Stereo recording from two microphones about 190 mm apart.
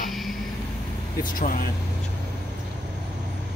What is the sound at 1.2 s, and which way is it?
Speech, 45° left (ahead or behind).